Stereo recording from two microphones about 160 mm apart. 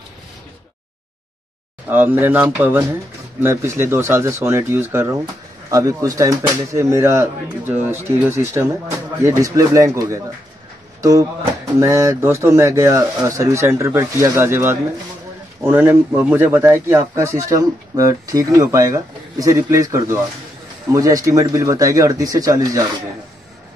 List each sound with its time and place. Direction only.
1.9 s speech: 15° right (ahead or behind)